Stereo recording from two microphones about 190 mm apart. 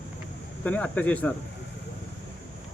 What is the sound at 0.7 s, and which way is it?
Speech, 5° left (ahead or behind).